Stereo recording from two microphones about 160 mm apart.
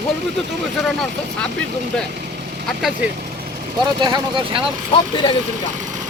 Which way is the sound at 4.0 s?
30° right (ahead or behind).